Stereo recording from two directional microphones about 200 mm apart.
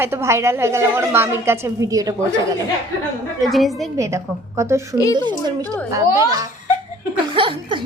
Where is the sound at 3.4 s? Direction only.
Centre (ahead or behind).